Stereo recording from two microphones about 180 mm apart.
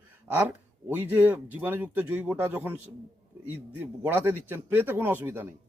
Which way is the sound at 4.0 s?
10° right (ahead or behind).